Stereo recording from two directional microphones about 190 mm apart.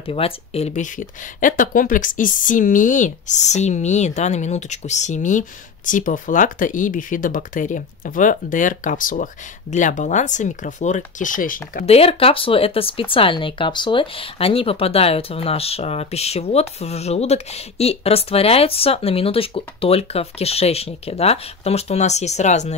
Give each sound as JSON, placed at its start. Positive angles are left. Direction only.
{"t": 0.0, "sound": "speech", "side_deg": 30}
{"t": 11.8, "sound": "speech", "side_deg": 30}